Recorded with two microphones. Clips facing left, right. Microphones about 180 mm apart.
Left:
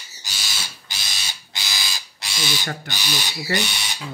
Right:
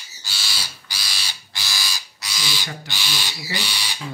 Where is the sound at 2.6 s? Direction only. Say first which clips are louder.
Left 4 dB; 55° left (ahead or behind).